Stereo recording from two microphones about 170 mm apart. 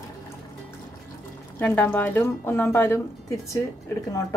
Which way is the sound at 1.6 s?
10° left (ahead or behind).